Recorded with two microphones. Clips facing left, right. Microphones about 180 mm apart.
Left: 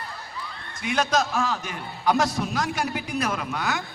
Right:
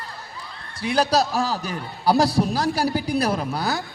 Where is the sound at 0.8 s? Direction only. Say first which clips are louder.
Right 4 dB; 35° right (ahead or behind).